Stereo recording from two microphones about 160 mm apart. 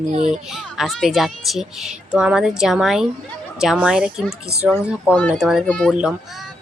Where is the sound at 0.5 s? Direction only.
Centre (ahead or behind).